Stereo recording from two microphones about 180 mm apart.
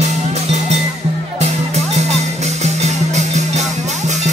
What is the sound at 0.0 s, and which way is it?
Music, 40° right (ahead or behind).